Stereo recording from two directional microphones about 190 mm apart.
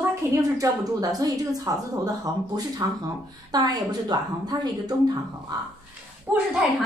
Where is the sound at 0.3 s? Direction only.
15° right (ahead or behind).